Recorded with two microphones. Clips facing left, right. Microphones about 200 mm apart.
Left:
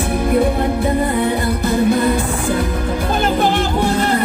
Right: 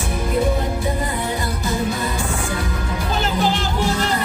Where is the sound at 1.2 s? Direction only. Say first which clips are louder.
Left 7 dB; 60° left (ahead or behind).